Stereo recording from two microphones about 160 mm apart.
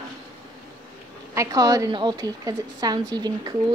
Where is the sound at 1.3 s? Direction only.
20° right (ahead or behind).